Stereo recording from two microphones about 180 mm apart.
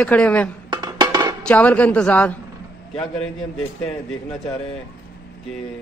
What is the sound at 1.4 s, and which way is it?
A man's voice, 5° left (ahead or behind).